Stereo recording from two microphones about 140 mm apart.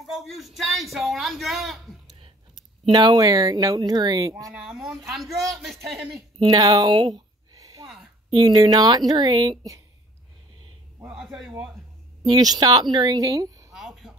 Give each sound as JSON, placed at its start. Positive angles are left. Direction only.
{"t": 0.0, "sound": "a man's voice", "side_deg": 0}
{"t": 2.9, "sound": "speech", "side_deg": -30}
{"t": 4.6, "sound": "a man's voice", "side_deg": 0}
{"t": 6.5, "sound": "a sound", "side_deg": -25}
{"t": 8.3, "sound": "a woman's voice", "side_deg": -30}
{"t": 11.1, "sound": "a man's voice", "side_deg": -5}
{"t": 12.3, "sound": "speech", "side_deg": -30}
{"t": 13.7, "sound": "a sound", "side_deg": 0}